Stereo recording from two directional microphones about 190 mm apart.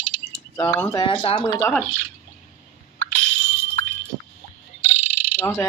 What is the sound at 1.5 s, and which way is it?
Speech, 15° left (ahead or behind).